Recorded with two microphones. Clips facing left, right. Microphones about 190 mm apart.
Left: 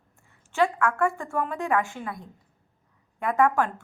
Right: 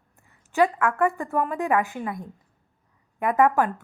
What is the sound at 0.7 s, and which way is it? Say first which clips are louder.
A woman's voice: right 2 dB; 20° right (ahead or behind).